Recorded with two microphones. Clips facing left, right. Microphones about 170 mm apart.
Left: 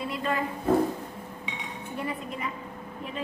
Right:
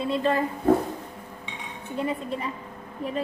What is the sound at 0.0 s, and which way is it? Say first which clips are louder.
Speech: right 6 dB; 30° right (ahead or behind).